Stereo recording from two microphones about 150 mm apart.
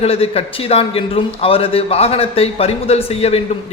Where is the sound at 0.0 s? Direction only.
40° left (ahead or behind).